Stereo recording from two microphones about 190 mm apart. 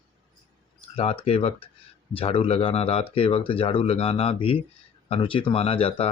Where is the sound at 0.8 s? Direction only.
30° left (ahead or behind).